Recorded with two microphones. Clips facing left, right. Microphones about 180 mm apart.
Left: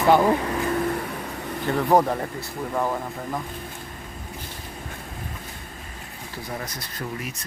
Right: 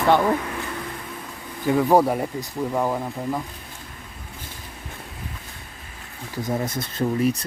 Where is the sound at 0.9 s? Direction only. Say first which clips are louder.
Left 6 dB; 70° left (ahead or behind).